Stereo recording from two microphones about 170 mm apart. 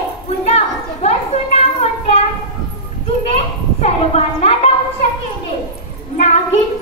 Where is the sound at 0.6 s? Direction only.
40° left (ahead or behind).